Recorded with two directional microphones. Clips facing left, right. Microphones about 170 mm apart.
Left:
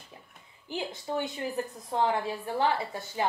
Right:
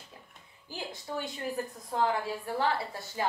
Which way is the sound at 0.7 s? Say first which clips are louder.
Left 5 dB; 20° left (ahead or behind).